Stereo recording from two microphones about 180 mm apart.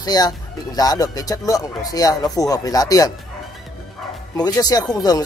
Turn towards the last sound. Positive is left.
turn(degrees=20)  # may be behind; listen again after turning